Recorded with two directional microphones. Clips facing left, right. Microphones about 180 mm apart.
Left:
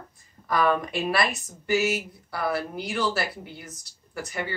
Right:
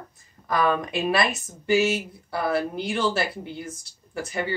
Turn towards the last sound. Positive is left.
turn(degrees=-25)  # may be behind; listen again after turning